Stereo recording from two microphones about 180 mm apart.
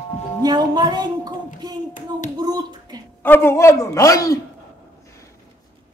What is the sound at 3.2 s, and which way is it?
A man's voice, 10° left (ahead or behind).